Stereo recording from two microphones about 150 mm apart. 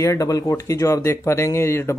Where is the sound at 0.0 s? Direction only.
20° left (ahead or behind).